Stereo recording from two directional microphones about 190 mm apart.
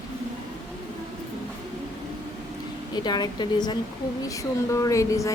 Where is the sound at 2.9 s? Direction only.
20° left (ahead or behind).